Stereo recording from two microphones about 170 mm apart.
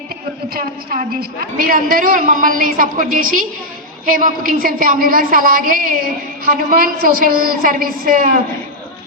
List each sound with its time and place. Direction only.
0.5 s a woman's voice: 60° right (ahead or behind)